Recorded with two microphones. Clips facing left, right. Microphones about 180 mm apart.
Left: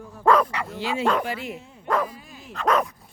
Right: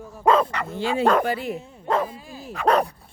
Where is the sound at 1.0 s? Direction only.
45° right (ahead or behind).